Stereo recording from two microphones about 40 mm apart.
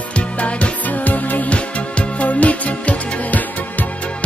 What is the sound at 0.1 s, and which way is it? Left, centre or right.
Music, left.